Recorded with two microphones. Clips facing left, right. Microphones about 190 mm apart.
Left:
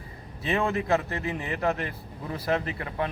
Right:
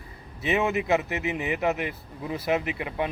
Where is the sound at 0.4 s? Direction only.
10° right (ahead or behind).